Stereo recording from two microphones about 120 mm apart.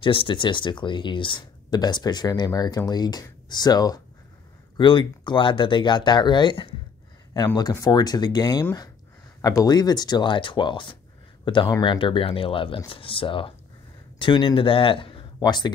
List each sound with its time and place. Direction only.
0.0 s speech: 45° left (ahead or behind)
7.8 s speech: 35° left (ahead or behind)